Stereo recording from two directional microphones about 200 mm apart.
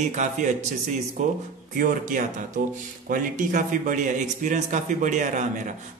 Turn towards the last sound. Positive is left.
turn(degrees=-40)  # may be behind; listen again after turning